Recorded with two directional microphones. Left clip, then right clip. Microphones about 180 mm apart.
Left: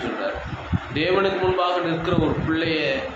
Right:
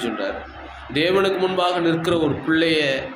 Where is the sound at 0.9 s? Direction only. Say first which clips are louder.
Right 2 dB; 55° right (ahead or behind).